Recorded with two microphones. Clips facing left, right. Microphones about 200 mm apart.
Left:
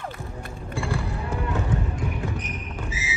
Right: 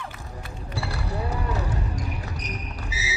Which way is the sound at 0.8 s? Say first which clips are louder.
Even; 40° right (ahead or behind).